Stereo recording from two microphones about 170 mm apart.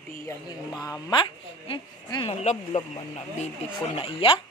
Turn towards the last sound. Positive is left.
turn(degrees=30)  # may be behind; listen again after turning